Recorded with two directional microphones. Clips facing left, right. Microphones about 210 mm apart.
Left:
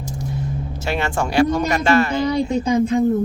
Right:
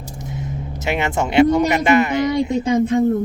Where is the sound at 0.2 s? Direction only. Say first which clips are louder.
Left 1 dB; 20° right (ahead or behind).